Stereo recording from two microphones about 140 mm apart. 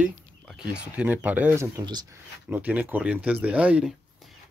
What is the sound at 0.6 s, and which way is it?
Speech, 10° right (ahead or behind).